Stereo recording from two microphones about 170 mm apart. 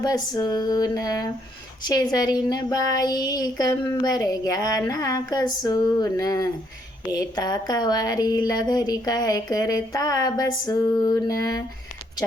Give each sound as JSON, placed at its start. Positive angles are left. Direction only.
{"t": 0.0, "sound": "speech", "side_deg": 20}